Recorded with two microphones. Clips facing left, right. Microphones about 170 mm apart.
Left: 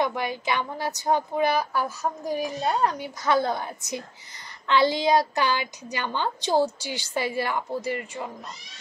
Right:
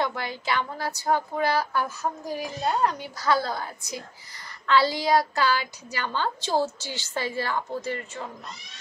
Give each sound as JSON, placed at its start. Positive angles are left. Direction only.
{"t": 0.0, "sound": "speech", "side_deg": 15}